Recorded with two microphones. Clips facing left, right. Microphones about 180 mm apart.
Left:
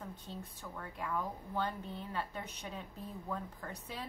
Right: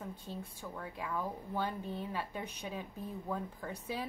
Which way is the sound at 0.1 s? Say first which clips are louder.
Right 2 dB; 10° right (ahead or behind).